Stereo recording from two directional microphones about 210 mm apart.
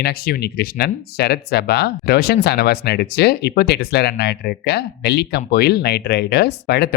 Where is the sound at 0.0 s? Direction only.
50° left (ahead or behind).